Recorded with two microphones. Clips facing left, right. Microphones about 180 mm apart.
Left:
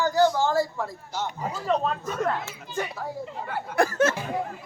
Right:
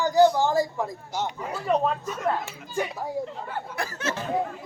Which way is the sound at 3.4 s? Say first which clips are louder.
Left 7 dB; 50° left (ahead or behind).